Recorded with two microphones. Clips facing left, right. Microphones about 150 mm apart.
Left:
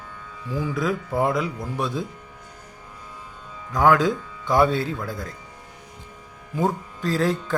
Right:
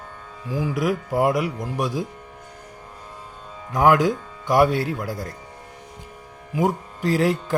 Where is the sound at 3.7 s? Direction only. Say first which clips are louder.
Right 1 dB; 20° right (ahead or behind).